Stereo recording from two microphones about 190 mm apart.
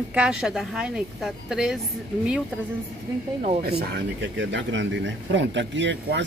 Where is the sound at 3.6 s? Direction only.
55° right (ahead or behind).